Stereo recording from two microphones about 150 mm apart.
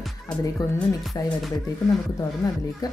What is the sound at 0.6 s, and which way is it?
Speech, 25° left (ahead or behind).